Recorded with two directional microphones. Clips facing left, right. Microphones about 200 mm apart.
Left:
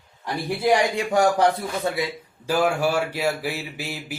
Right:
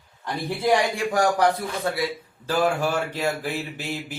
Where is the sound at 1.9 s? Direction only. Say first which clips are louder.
Right 2 dB; 20° left (ahead or behind).